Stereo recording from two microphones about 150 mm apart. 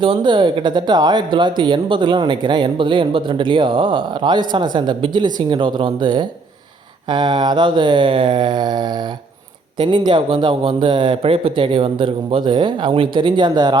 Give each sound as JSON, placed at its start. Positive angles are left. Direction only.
{"t": 0.0, "sound": "speech", "side_deg": -30}